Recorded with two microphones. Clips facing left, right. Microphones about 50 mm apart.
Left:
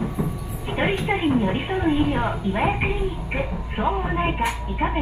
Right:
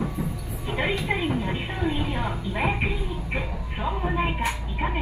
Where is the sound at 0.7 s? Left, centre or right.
Left.